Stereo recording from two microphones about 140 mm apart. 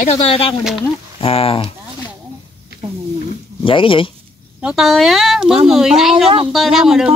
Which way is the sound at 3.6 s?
40° left (ahead or behind).